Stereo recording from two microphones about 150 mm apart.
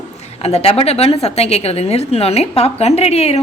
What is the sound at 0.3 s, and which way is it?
A woman's voice, 40° left (ahead or behind).